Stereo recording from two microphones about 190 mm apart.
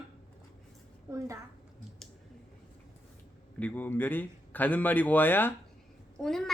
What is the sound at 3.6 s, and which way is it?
A man's voice, 10° left (ahead or behind).